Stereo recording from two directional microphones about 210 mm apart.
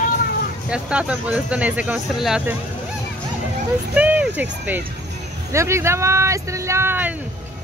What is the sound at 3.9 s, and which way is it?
Speech, 5° right (ahead or behind).